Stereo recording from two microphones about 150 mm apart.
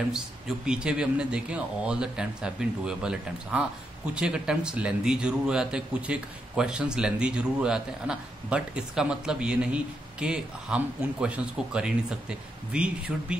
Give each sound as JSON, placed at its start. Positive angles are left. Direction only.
{"t": 0.1, "sound": "speech", "side_deg": -5}